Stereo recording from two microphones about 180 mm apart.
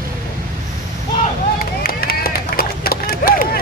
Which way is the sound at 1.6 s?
55° left (ahead or behind).